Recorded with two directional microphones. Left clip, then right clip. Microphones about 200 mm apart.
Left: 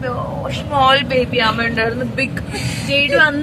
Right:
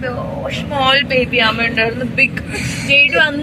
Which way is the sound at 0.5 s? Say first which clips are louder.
Left 1 dB; 20° left (ahead or behind).